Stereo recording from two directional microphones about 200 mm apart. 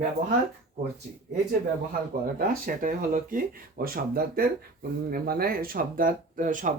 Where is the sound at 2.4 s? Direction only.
45° right (ahead or behind).